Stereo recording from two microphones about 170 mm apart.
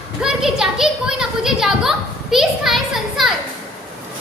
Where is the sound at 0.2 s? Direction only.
5° right (ahead or behind).